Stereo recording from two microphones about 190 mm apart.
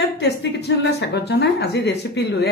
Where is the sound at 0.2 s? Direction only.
65° left (ahead or behind).